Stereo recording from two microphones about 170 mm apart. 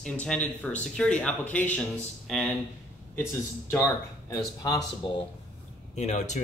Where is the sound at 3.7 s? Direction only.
15° left (ahead or behind).